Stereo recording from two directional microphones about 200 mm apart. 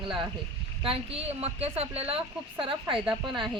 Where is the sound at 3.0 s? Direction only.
Centre (ahead or behind).